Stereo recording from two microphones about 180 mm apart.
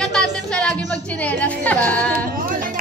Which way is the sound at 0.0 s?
5° left (ahead or behind).